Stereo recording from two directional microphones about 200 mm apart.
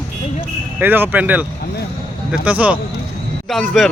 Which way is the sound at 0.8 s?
10° right (ahead or behind).